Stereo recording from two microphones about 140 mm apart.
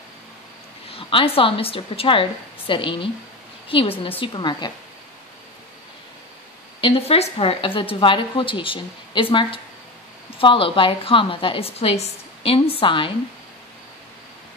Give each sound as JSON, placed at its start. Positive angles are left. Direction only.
{"t": 0.8, "sound": "a woman's voice", "side_deg": 40}
{"t": 6.8, "sound": "a woman's voice", "side_deg": 45}